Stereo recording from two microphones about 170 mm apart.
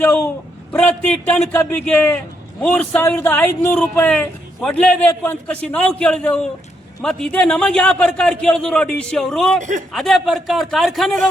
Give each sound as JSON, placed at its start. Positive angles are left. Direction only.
{"t": 0.0, "sound": "a sound", "side_deg": 10}
{"t": 0.7, "sound": "a man's voice", "side_deg": 5}
{"t": 9.6, "sound": "a man's voice", "side_deg": -50}
{"t": 9.9, "sound": "a man's voice", "side_deg": 0}